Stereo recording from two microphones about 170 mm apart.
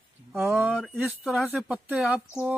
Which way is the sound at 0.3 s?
Centre (ahead or behind).